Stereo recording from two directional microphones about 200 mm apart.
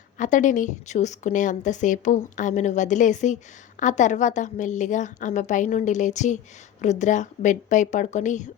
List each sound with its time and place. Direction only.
0.2 s a woman's voice: 40° left (ahead or behind)